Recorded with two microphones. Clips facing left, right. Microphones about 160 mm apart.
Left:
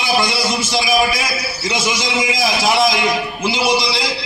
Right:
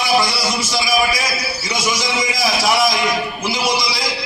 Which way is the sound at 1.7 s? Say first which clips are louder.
Left 1 dB; 25° left (ahead or behind).